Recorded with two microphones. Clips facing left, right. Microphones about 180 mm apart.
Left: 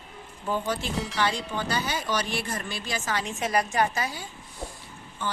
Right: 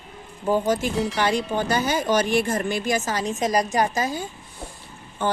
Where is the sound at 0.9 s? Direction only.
Centre (ahead or behind).